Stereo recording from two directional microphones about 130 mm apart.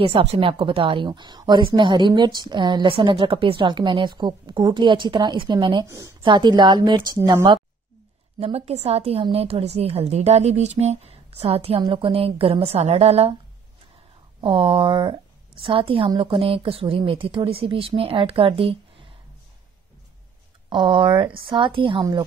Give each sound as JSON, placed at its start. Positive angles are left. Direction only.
{"t": 0.0, "sound": "a woman's voice", "side_deg": -50}
{"t": 5.9, "sound": "a woman's voice", "side_deg": -25}
{"t": 6.2, "sound": "a woman's voice", "side_deg": -35}
{"t": 8.4, "sound": "a woman's voice", "side_deg": -50}
{"t": 14.4, "sound": "a woman's voice", "side_deg": -40}
{"t": 20.7, "sound": "a woman's voice", "side_deg": -40}